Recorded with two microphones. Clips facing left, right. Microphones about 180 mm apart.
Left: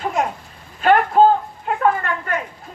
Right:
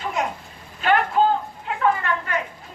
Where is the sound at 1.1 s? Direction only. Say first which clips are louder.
Left 7 dB; 40° left (ahead or behind).